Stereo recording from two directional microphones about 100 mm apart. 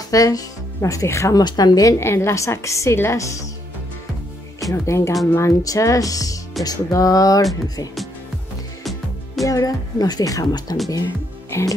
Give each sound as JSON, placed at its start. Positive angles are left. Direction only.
{"t": 0.1, "sound": "a woman's voice", "side_deg": 35}
{"t": 1.4, "sound": "a woman's voice", "side_deg": 45}
{"t": 4.6, "sound": "a woman's voice", "side_deg": 30}
{"t": 9.4, "sound": "a woman's voice", "side_deg": 35}